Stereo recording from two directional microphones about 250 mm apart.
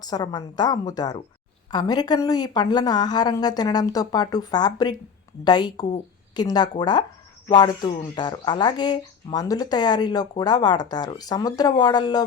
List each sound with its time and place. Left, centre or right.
0.0 s speech: centre